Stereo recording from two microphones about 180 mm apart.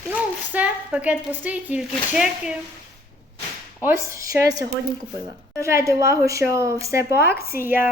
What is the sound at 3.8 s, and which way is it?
A woman's voice, 15° right (ahead or behind).